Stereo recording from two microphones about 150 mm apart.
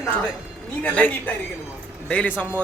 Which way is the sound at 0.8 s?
10° left (ahead or behind).